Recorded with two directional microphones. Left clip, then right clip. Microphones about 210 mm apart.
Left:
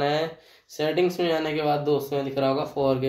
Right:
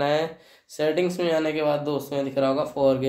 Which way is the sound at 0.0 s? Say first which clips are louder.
Right 1 dB; 25° right (ahead or behind).